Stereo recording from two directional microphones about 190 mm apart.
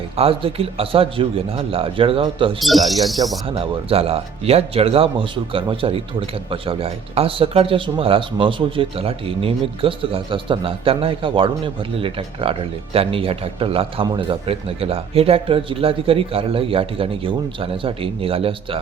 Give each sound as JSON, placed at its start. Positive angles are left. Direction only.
{"t": 0.2, "sound": "speech", "side_deg": -30}
{"t": 2.6, "sound": "speech", "side_deg": 0}
{"t": 3.5, "sound": "speech", "side_deg": -30}